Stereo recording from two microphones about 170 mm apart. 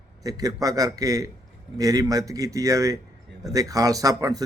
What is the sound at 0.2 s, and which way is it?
Speech, 20° right (ahead or behind).